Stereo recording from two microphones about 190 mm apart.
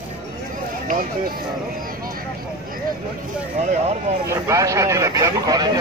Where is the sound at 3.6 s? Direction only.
35° right (ahead or behind).